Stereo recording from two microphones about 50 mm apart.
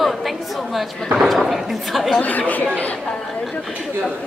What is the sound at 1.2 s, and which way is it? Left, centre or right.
A woman's voice, centre.